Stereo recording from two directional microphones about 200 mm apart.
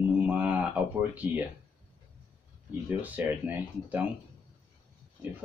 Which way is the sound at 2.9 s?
10° right (ahead or behind).